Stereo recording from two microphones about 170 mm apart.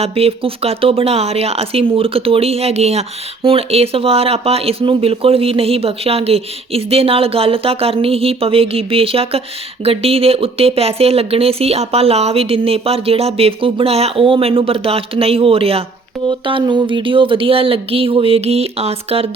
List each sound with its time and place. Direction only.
0.0 s speech: 35° right (ahead or behind)